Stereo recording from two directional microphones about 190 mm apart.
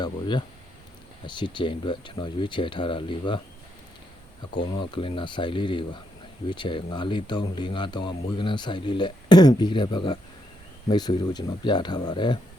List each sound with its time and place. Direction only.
0.0 s speech: 25° left (ahead or behind)
4.8 s speech: 25° left (ahead or behind)